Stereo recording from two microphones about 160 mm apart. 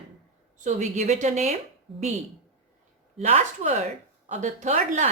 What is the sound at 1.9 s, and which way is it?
Speech, centre (ahead or behind).